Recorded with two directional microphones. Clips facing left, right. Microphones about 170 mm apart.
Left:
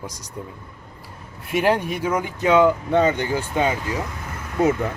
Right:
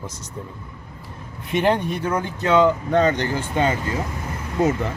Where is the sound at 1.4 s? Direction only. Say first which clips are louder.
Even; 5° left (ahead or behind).